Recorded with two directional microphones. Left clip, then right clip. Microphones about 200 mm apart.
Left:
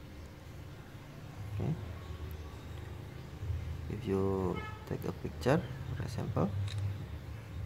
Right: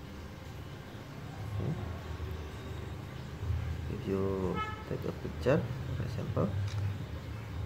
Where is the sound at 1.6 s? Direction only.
25° left (ahead or behind).